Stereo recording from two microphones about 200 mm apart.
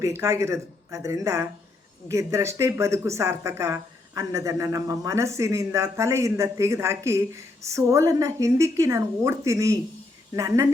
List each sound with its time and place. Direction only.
0.0 s a woman's voice: 15° right (ahead or behind)